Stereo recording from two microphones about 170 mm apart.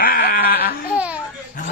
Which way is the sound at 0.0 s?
60° left (ahead or behind).